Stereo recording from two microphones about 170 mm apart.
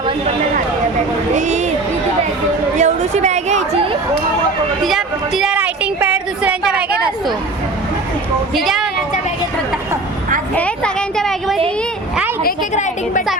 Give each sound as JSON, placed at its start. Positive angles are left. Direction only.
{"t": 1.4, "sound": "speech", "side_deg": -45}
{"t": 2.7, "sound": "a woman's voice", "side_deg": -45}
{"t": 4.8, "sound": "a woman's voice", "side_deg": 0}
{"t": 8.5, "sound": "a sound", "side_deg": 0}
{"t": 10.5, "sound": "a sound", "side_deg": 5}
{"t": 12.7, "sound": "a woman's voice", "side_deg": 45}